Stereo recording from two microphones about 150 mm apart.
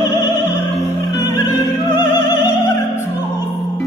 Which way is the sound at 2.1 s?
15° right (ahead or behind).